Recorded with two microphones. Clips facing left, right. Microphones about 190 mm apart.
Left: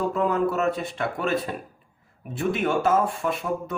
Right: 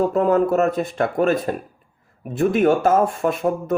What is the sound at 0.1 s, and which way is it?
Speech, 45° right (ahead or behind).